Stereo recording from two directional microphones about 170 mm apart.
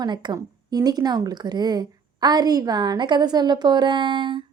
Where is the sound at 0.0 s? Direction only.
25° right (ahead or behind).